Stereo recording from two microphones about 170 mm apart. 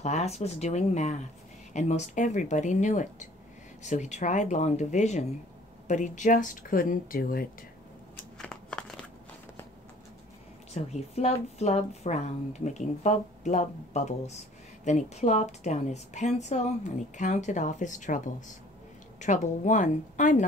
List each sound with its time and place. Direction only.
0.0 s a woman's voice: 40° left (ahead or behind); by 7.4 s 60° left (ahead or behind)
8.4 s crumpling: 5° left (ahead or behind)
10.7 s a woman's voice: 40° left (ahead or behind)